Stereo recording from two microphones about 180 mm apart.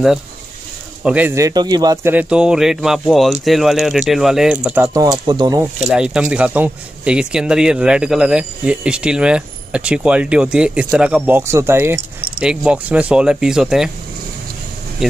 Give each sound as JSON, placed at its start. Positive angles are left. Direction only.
{"t": 1.0, "sound": "speech", "side_deg": -10}
{"t": 2.1, "sound": "speech", "side_deg": -5}
{"t": 4.9, "sound": "speech", "side_deg": -20}
{"t": 5.9, "sound": "speech", "side_deg": -5}